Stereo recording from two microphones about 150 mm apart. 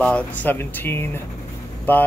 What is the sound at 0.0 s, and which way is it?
Speech, 10° left (ahead or behind).